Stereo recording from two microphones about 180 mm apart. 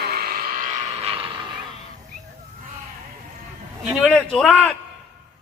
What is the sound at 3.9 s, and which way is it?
Speech, 5° left (ahead or behind).